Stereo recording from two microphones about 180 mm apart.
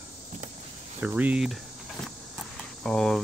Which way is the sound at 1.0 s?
10° right (ahead or behind).